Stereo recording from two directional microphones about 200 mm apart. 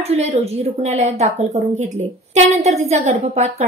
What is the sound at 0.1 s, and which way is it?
A woman's voice, 30° right (ahead or behind).